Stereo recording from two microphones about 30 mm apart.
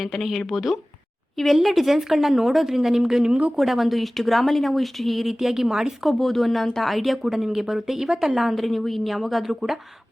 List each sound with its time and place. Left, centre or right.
0.0 s speech: centre
0.3 s a woman's voice: centre
3.2 s speech: right
3.5 s speech: centre
5.5 s a woman's voice: centre
6.1 s a woman's voice: centre
8.4 s speech: centre